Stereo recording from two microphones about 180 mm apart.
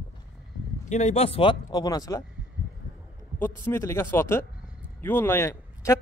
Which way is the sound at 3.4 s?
15° left (ahead or behind).